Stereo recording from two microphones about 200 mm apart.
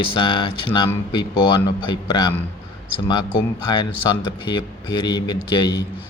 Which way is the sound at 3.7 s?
25° left (ahead or behind).